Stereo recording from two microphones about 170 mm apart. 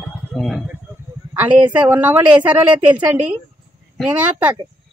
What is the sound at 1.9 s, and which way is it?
Speech, 10° right (ahead or behind).